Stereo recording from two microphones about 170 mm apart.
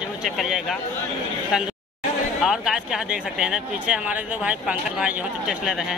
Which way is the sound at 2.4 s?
Centre (ahead or behind).